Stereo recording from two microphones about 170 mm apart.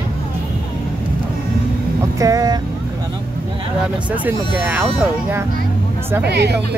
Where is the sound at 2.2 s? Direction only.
20° right (ahead or behind).